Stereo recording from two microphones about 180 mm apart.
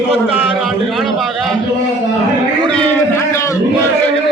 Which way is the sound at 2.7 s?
10° left (ahead or behind).